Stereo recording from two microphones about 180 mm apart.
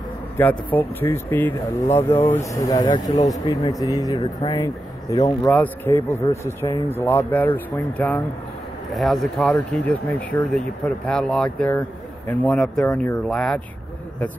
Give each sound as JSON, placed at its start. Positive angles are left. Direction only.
{"t": 0.4, "sound": "speech", "side_deg": 10}